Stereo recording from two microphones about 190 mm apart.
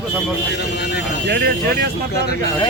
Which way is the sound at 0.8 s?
60° left (ahead or behind).